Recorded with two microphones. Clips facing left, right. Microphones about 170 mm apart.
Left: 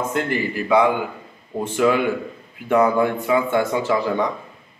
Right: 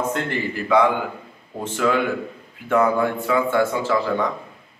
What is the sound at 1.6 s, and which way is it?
A man's voice, 10° left (ahead or behind).